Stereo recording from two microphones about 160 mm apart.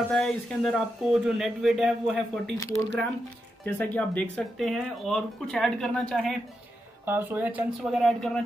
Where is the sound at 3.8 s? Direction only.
10° left (ahead or behind).